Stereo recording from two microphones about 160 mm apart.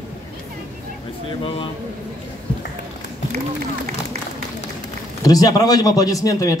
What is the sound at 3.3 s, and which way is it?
Run, 70° right (ahead or behind).